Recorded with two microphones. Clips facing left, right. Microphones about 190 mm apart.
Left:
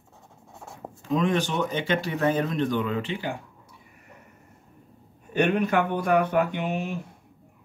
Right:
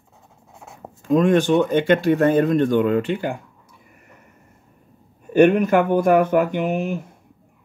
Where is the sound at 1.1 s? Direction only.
50° right (ahead or behind).